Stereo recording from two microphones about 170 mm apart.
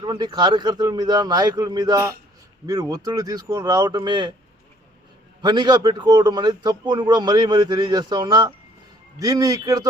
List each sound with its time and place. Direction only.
0.0 s a man's voice: 25° right (ahead or behind)
5.4 s a man's voice: 25° right (ahead or behind)